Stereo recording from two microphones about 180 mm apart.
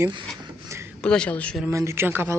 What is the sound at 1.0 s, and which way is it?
Speech, 5° left (ahead or behind).